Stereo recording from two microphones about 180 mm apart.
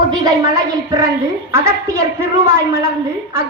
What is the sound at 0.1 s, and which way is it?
A woman's voice, 20° right (ahead or behind).